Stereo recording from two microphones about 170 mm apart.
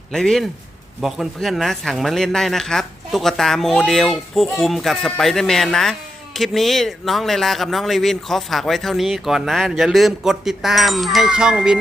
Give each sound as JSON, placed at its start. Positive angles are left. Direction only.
{"t": 0.1, "sound": "speech", "side_deg": 0}